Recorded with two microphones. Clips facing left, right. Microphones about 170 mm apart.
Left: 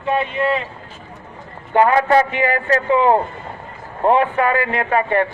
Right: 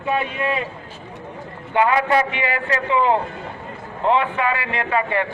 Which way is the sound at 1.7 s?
40° left (ahead or behind).